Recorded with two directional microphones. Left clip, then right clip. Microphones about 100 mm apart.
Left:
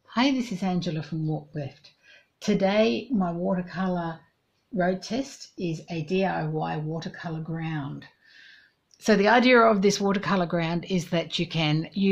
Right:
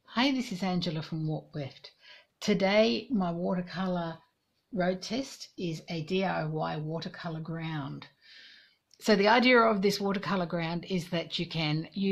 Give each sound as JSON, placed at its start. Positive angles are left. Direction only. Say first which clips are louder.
{"t": 0.3, "sound": "speech", "louder": "left 4 dB", "side_deg": -30}
{"t": 0.6, "sound": "speech", "louder": "left 3 dB", "side_deg": -55}
{"t": 2.3, "sound": "speech", "louder": "left 2 dB", "side_deg": -45}
{"t": 9.0, "sound": "speech", "louder": "left 4 dB", "side_deg": -30}